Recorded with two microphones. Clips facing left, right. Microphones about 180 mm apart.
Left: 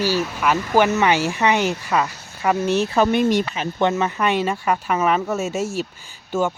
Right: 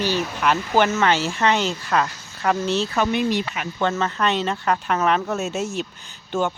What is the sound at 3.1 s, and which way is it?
Speech, 50° left (ahead or behind).